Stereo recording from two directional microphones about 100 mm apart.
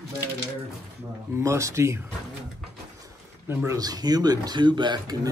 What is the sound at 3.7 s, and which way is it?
Speech, 40° right (ahead or behind).